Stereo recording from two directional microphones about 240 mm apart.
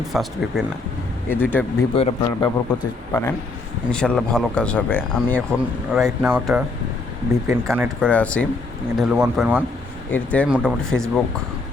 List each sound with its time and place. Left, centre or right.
0.1 s a man's voice: centre
2.0 s a man's voice: left; by 7.9 s centre
8.0 s speech: centre
10.1 s speech: centre